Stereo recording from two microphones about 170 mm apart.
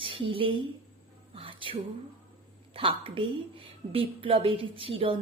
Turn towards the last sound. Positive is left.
turn(degrees=-35)  # may be behind; listen again after turning